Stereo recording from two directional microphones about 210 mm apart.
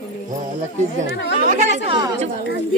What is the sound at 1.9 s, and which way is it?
Speech, 20° right (ahead or behind).